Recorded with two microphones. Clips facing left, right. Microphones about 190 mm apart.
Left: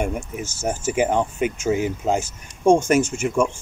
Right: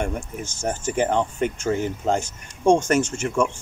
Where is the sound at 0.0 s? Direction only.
10° left (ahead or behind).